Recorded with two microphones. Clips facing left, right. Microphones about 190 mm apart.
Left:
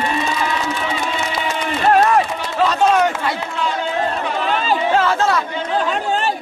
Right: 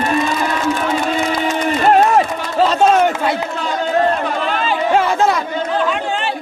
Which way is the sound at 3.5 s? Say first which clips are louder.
Right 3 dB; 45° right (ahead or behind).